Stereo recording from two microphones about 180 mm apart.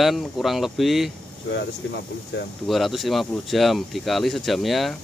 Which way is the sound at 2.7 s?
Centre (ahead or behind).